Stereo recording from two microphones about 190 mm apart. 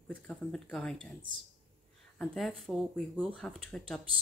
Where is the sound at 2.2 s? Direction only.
5° left (ahead or behind).